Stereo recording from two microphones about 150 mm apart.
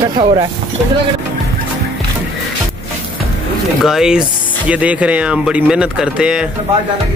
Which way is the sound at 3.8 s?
5° right (ahead or behind).